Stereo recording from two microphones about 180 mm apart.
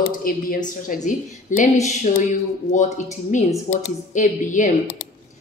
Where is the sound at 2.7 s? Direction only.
40° left (ahead or behind).